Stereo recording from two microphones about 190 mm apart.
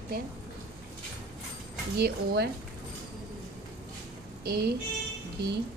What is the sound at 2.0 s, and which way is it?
Speech, 60° right (ahead or behind).